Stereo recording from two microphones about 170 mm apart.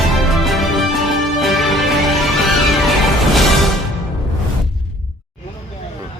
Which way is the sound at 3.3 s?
Centre (ahead or behind).